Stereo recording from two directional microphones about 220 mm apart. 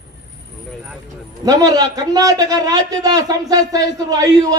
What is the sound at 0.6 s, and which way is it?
Vehicle, centre (ahead or behind).